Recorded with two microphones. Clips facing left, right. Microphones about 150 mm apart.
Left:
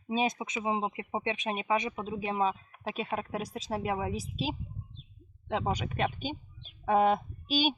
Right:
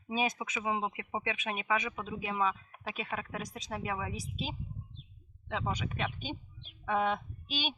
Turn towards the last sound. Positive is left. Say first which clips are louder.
# left 9 dB
turn(degrees=40)  # may be behind; listen again after turning